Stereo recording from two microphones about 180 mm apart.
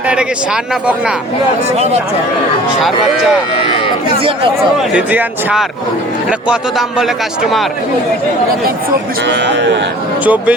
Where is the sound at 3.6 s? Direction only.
25° left (ahead or behind).